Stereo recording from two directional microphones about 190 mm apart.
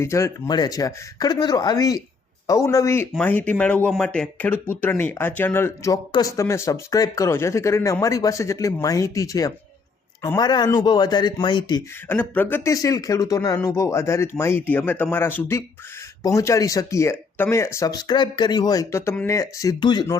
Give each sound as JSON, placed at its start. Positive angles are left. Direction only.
{"t": 0.0, "sound": "speech", "side_deg": 15}
{"t": 12.0, "sound": "speech", "side_deg": 10}